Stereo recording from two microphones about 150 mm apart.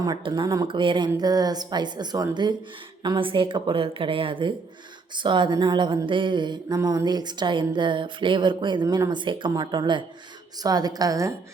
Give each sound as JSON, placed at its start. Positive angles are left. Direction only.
{"t": 0.0, "sound": "speech", "side_deg": -30}